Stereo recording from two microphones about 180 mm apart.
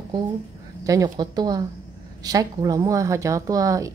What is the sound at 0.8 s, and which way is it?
A woman's voice, 20° right (ahead or behind).